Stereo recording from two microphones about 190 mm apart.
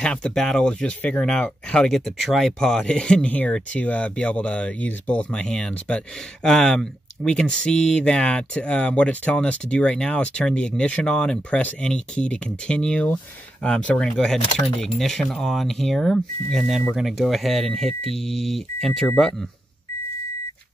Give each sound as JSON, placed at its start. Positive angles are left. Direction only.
{"t": 0.0, "sound": "speech", "side_deg": 5}